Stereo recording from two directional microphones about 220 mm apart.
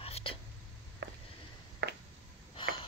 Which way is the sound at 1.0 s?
55° right (ahead or behind).